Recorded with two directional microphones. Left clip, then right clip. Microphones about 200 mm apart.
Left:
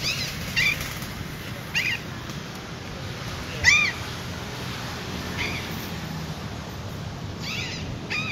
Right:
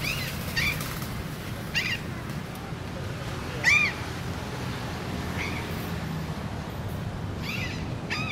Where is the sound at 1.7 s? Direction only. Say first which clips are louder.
Left 3 dB; 25° right (ahead or behind).